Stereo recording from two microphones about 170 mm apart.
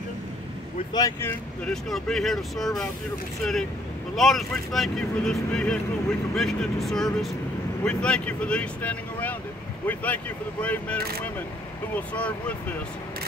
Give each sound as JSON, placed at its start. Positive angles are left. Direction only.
{"t": 0.9, "sound": "speech", "side_deg": 20}
{"t": 1.6, "sound": "speech", "side_deg": 0}
{"t": 4.1, "sound": "speech", "side_deg": 0}